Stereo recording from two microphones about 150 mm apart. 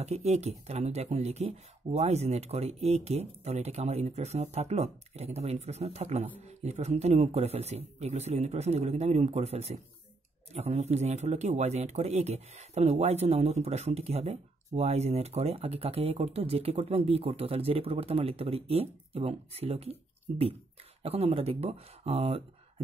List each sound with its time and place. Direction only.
0.0 s a man's voice: 45° right (ahead or behind)